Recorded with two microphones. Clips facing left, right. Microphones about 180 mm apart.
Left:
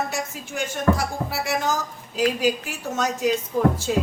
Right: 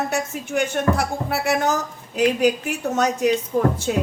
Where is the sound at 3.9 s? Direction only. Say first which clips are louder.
Right 1 dB; 55° right (ahead or behind).